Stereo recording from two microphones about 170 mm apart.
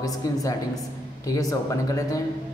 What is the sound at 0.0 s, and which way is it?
A man's voice, 20° left (ahead or behind).